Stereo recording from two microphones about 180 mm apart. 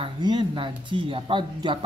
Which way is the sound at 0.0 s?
25° right (ahead or behind).